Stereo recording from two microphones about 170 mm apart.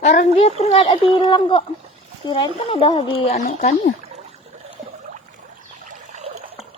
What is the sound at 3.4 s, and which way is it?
Speech, 40° left (ahead or behind).